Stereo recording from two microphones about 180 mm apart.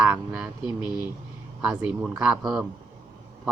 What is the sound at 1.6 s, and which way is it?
Speech, 5° right (ahead or behind).